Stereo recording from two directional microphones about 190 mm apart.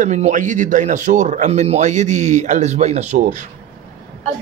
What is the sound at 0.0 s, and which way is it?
Speech, 40° right (ahead or behind).